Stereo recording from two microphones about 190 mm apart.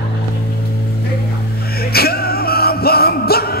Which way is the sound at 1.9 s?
55° left (ahead or behind).